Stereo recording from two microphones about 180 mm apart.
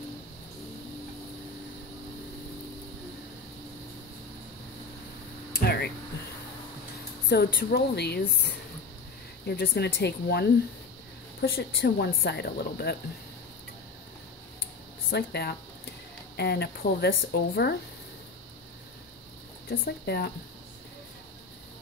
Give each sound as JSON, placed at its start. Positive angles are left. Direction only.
{"t": 5.5, "sound": "a sound", "side_deg": 60}
{"t": 7.2, "sound": "speech", "side_deg": 65}
{"t": 9.5, "sound": "speech", "side_deg": 65}
{"t": 15.0, "sound": "speech", "side_deg": 65}
{"t": 19.7, "sound": "speech", "side_deg": 55}